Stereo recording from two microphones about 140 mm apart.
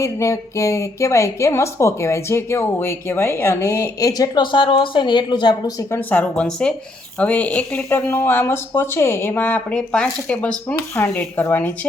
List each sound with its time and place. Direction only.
0.0 s speech: 20° left (ahead or behind)
4.5 s a woman's voice: 35° left (ahead or behind)
5.9 s speech: 10° left (ahead or behind)